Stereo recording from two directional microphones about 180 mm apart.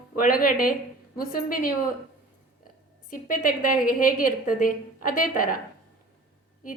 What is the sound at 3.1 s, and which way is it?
A woman's voice, 50° left (ahead or behind).